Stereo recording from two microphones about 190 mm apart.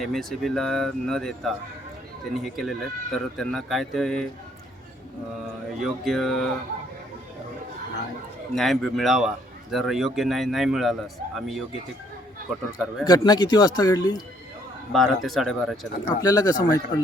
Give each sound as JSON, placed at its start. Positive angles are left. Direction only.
{"t": 0.0, "sound": "speech", "side_deg": 0}
{"t": 5.8, "sound": "speech", "side_deg": 0}
{"t": 8.5, "sound": "speech", "side_deg": 0}
{"t": 13.1, "sound": "speech", "side_deg": 20}
{"t": 14.9, "sound": "speech", "side_deg": 0}
{"t": 16.2, "sound": "speech", "side_deg": 20}